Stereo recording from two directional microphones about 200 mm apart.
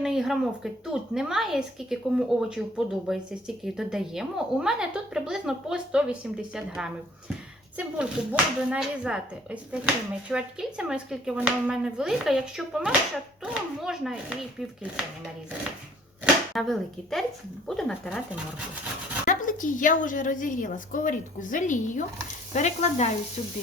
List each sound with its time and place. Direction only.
0.0 s a woman's voice: centre (ahead or behind)
16.2 s a woman's voice: centre (ahead or behind)
19.2 s a woman's voice: 40° left (ahead or behind)